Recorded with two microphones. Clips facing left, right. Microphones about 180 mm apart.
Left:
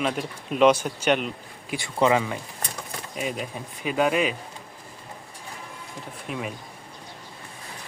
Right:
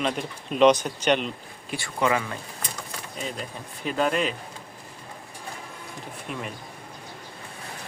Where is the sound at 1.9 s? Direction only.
25° left (ahead or behind); by 4.3 s 10° left (ahead or behind).